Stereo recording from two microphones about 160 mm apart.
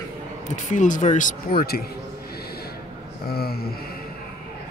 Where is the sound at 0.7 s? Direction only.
50° left (ahead or behind); by 1.9 s 75° left (ahead or behind).